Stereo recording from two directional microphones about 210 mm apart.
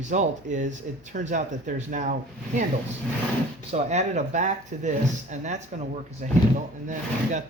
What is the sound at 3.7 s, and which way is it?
Speech, 35° right (ahead or behind).